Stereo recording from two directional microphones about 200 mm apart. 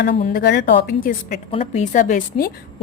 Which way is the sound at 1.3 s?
35° left (ahead or behind).